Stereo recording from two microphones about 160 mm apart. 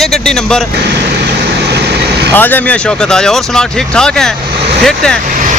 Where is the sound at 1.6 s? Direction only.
90° right.